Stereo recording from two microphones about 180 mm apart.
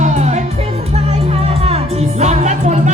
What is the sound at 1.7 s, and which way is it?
Music, 40° right (ahead or behind).